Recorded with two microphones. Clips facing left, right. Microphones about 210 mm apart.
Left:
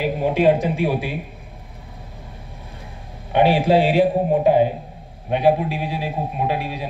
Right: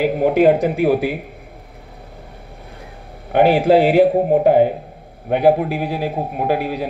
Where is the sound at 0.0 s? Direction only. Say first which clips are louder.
Right 4 dB; 55° right (ahead or behind).